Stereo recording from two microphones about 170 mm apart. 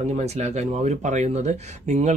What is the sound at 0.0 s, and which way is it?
Speech, 40° right (ahead or behind).